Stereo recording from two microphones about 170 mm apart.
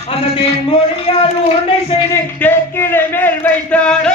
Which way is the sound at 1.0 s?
35° left (ahead or behind).